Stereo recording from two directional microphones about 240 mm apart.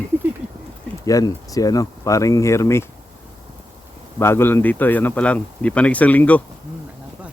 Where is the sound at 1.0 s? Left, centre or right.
Centre.